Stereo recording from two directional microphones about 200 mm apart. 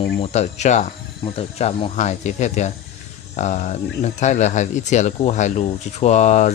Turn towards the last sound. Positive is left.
turn(degrees=35)  # may be behind; listen again after turning